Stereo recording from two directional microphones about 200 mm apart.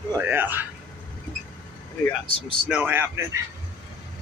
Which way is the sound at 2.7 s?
10° right (ahead or behind).